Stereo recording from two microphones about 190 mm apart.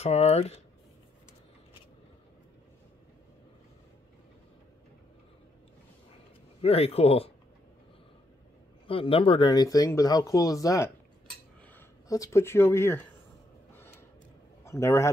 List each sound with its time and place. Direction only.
0.0 s a man's voice: 35° left (ahead or behind)
6.6 s a man's voice: 30° left (ahead or behind)
8.8 s speech: 30° left (ahead or behind); by 13.0 s 10° left (ahead or behind)
13.7 s gasp: 10° left (ahead or behind)
14.6 s a man's voice: 15° left (ahead or behind)